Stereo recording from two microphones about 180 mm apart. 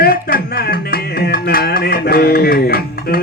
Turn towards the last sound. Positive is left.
turn(degrees=55)  # may be behind; listen again after turning